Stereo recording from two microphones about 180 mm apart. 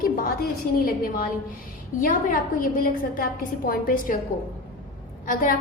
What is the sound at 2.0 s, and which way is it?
A woman's voice, 50° left (ahead or behind).